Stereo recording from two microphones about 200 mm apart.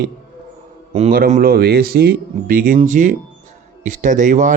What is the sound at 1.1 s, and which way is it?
Speech, 40° right (ahead or behind).